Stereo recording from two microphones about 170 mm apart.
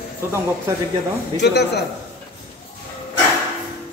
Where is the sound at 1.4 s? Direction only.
80° left.